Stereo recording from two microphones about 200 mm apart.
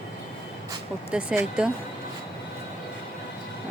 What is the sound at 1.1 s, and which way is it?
Speech, 5° right (ahead or behind).